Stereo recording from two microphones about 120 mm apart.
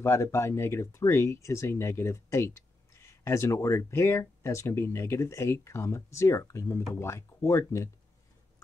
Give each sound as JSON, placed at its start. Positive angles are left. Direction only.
{"t": 0.0, "sound": "speech", "side_deg": 20}